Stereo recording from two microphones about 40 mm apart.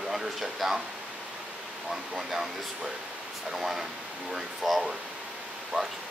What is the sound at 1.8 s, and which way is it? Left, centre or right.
Speech, centre.